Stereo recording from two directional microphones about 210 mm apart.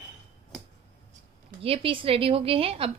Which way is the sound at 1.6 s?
25° right (ahead or behind).